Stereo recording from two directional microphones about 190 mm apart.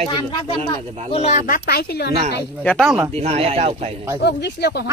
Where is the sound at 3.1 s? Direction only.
35° right (ahead or behind).